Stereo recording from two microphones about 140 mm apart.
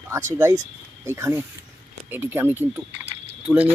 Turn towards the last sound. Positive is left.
turn(degrees=10)  # may be behind; listen again after turning